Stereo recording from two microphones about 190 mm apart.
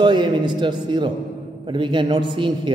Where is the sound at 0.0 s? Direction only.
25° right (ahead or behind).